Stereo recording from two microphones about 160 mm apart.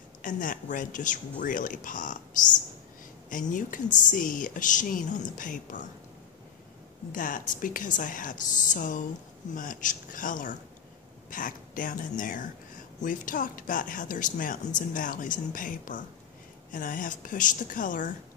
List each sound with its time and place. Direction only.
0.2 s speech: 55° left (ahead or behind)
7.1 s speech: 55° left (ahead or behind)